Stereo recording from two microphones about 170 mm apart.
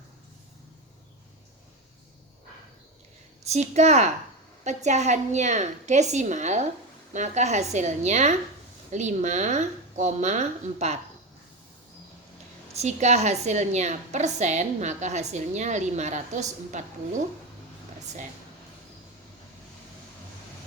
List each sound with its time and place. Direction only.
3.5 s a woman's voice: 40° right (ahead or behind)
12.7 s a woman's voice: 40° right (ahead or behind)